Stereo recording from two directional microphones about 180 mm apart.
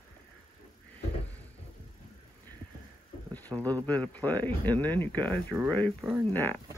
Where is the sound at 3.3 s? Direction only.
10° left (ahead or behind).